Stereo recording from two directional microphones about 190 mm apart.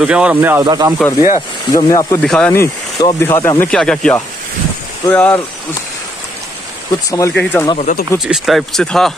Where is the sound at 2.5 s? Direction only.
15° left (ahead or behind).